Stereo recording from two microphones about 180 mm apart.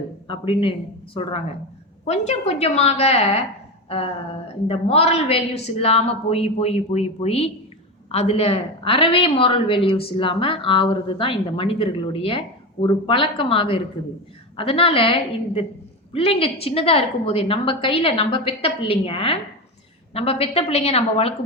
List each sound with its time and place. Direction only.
0.3 s a woman's voice: 30° left (ahead or behind)
3.8 s a sound: 35° left (ahead or behind)
4.7 s a woman's voice: 35° left (ahead or behind)